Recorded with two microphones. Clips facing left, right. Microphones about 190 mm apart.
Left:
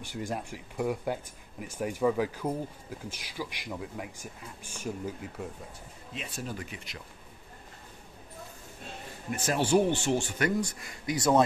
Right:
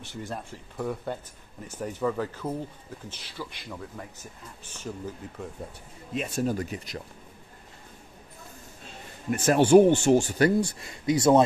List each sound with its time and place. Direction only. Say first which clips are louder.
0.3 s speech: left 1 dB; 10° left (ahead or behind)
6.1 s speech: right 10 dB; 45° right (ahead or behind)
9.3 s speech: right 8 dB; 50° right (ahead or behind); by 11.4 s 25° right (ahead or behind)